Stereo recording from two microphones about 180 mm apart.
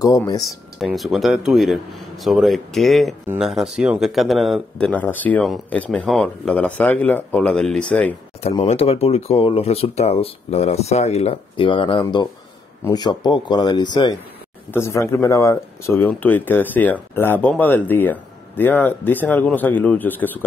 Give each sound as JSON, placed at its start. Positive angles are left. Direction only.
{"t": 0.0, "sound": "speech", "side_deg": 20}
{"t": 0.7, "sound": "speech", "side_deg": 0}
{"t": 8.5, "sound": "speech", "side_deg": 35}